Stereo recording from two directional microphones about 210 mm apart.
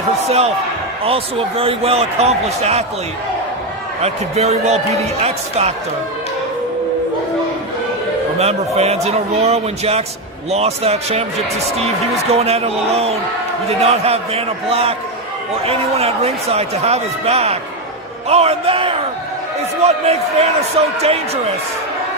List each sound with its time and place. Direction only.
0.3 s a man's voice: 30° right (ahead or behind)
4.0 s speech: 30° right (ahead or behind)
8.4 s a man's voice: 30° right (ahead or behind)
12.3 s a man's voice: 30° right (ahead or behind)